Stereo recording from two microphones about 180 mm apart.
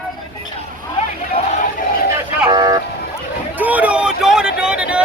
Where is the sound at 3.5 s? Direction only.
10° right (ahead or behind).